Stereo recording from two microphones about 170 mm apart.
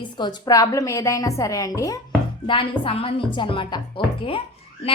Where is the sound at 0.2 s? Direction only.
25° left (ahead or behind).